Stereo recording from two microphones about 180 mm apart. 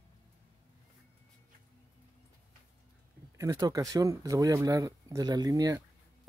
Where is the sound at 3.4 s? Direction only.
20° right (ahead or behind).